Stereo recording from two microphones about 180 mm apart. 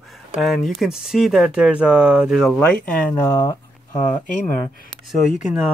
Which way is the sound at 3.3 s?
20° left (ahead or behind).